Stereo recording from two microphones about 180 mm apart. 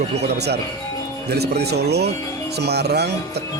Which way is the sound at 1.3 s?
65° right (ahead or behind).